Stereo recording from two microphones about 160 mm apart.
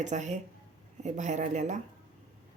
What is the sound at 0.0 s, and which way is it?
Speech, 45° right (ahead or behind).